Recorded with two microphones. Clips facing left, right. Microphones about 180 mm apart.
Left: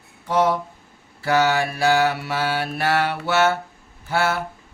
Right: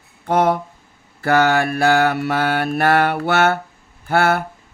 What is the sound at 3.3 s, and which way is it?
Speech, 55° right (ahead or behind).